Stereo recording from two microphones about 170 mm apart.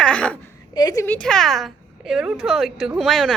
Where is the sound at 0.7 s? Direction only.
20° left (ahead or behind).